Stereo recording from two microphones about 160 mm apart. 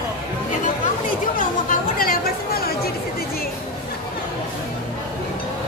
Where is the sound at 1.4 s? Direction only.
60° left (ahead or behind).